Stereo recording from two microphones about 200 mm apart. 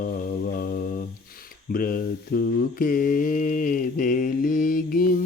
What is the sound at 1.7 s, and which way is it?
Mantra, 45° left (ahead or behind).